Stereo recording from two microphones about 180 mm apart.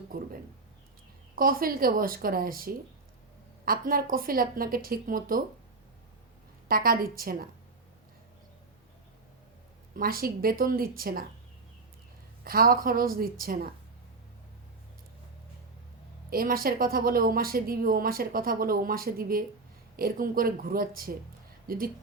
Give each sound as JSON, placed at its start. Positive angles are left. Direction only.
{"t": 1.4, "sound": "a woman's voice", "side_deg": -55}
{"t": 6.7, "sound": "a woman's voice", "side_deg": -55}
{"t": 9.9, "sound": "a woman's voice", "side_deg": -55}
{"t": 12.5, "sound": "a woman's voice", "side_deg": -55}
{"t": 16.3, "sound": "a woman's voice", "side_deg": -55}